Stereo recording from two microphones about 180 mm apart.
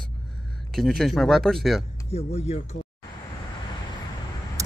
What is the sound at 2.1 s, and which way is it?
Speech, 35° left (ahead or behind).